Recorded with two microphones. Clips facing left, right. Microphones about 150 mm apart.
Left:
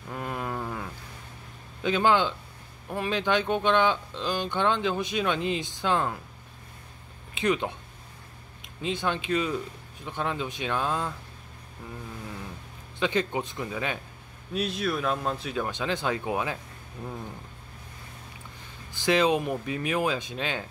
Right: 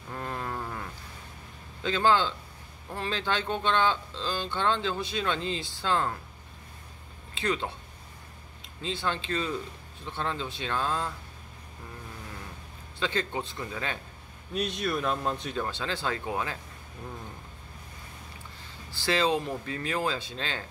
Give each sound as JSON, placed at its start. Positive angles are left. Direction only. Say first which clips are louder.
{"t": 0.1, "sound": "a sound", "louder": "left 2 dB", "side_deg": 10}
{"t": 1.8, "sound": "speech", "louder": "left 2 dB", "side_deg": 15}
{"t": 7.3, "sound": "speech", "louder": "left 4 dB", "side_deg": 15}
{"t": 8.8, "sound": "speech", "louder": "left 3 dB", "side_deg": 15}
{"t": 13.0, "sound": "speech", "louder": "left 4 dB", "side_deg": 15}
{"t": 14.5, "sound": "speech", "louder": "left 1 dB", "side_deg": 0}
{"t": 15.7, "sound": "speech", "louder": "left 3 dB", "side_deg": 15}
{"t": 18.9, "sound": "speech", "louder": "left 3 dB", "side_deg": 15}